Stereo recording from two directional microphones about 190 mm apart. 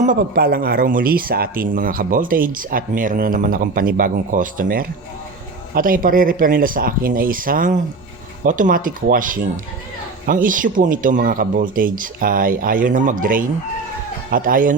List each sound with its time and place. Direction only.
0.0 s speech: 50° right (ahead or behind)